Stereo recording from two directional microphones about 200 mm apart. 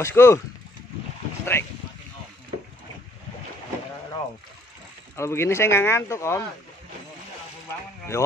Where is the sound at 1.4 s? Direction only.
10° left (ahead or behind).